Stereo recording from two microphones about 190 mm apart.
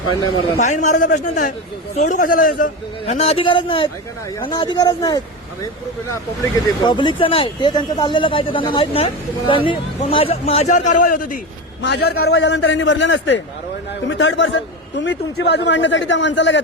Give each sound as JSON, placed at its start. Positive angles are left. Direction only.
{"t": 0.6, "sound": "a man's voice", "side_deg": 40}
{"t": 3.1, "sound": "speech", "side_deg": 30}
{"t": 6.8, "sound": "speech", "side_deg": 25}
{"t": 11.8, "sound": "a man's voice", "side_deg": 60}